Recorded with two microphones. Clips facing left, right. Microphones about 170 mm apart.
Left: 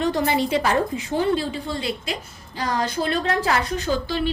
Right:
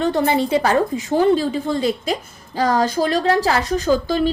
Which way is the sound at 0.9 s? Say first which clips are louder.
Right 6 dB; 40° right (ahead or behind).